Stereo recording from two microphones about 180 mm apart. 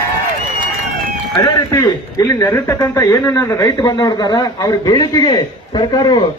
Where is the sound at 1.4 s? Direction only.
20° left (ahead or behind).